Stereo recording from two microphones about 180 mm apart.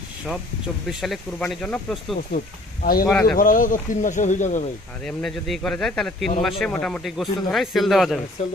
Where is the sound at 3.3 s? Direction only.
50° left (ahead or behind).